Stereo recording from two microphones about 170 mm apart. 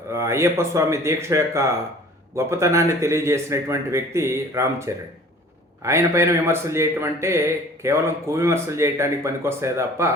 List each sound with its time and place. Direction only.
0.1 s a man's voice: 15° right (ahead or behind)